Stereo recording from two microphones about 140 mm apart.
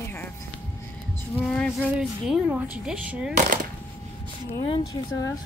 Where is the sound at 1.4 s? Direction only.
10° left (ahead or behind).